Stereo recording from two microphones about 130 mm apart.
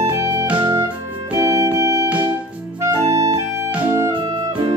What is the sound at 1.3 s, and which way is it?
Organ, 25° right (ahead or behind).